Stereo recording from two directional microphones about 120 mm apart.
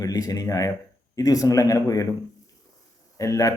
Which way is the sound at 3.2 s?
25° left (ahead or behind).